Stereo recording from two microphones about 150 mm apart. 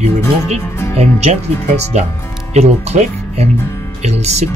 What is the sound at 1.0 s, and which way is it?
Speech, 45° right (ahead or behind).